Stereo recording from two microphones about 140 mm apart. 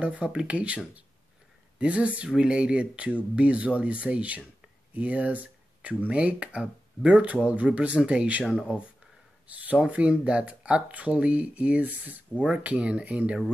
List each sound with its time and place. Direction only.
0.0 s speech: 10° right (ahead or behind)